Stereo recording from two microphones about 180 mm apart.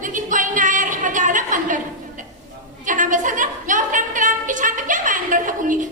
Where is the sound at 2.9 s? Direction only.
45° right (ahead or behind).